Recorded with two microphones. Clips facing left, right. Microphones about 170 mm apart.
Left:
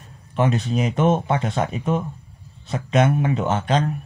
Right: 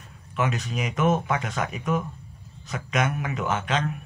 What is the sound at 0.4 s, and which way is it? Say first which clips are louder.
Speech: left 6 dB; 35° left (ahead or behind).